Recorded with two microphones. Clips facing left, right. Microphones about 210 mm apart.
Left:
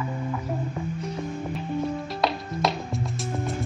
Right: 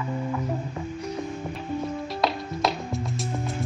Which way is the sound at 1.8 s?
Centre (ahead or behind).